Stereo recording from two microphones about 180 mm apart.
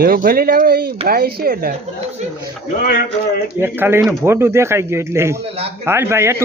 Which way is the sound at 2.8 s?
55° left (ahead or behind).